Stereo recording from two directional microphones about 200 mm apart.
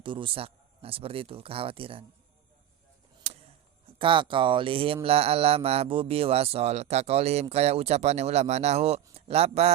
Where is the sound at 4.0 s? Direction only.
25° right (ahead or behind).